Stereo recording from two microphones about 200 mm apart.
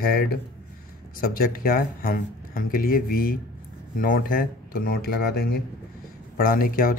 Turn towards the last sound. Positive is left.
turn(degrees=45)  # may be behind; listen again after turning